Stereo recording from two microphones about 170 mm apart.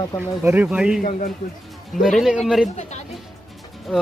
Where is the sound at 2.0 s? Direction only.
Centre (ahead or behind).